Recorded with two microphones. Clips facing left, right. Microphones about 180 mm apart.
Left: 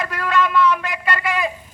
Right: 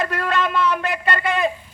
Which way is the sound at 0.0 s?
30° right (ahead or behind).